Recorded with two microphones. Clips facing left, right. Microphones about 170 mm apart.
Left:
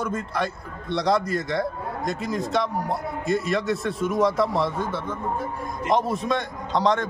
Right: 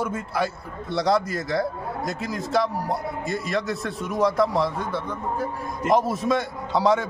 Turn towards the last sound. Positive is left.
turn(degrees=-5)  # may be behind; listen again after turning